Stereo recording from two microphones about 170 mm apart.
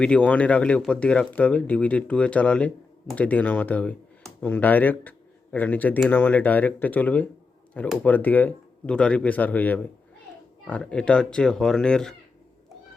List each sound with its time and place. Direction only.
0.0 s speech: 5° left (ahead or behind)